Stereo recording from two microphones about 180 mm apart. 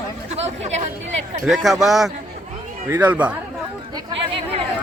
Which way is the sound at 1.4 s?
Centre (ahead or behind).